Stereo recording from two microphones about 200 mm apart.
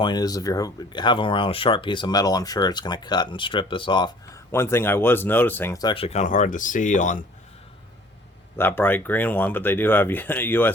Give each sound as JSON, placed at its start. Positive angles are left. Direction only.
{"t": 0.0, "sound": "speech", "side_deg": 20}
{"t": 4.5, "sound": "speech", "side_deg": 10}
{"t": 8.5, "sound": "speech", "side_deg": 10}